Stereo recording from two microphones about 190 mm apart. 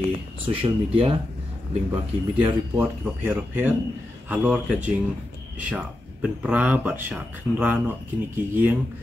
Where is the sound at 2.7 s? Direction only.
10° right (ahead or behind).